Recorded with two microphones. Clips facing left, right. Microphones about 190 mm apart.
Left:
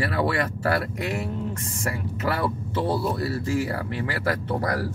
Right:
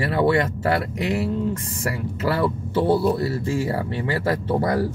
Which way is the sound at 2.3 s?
30° right (ahead or behind).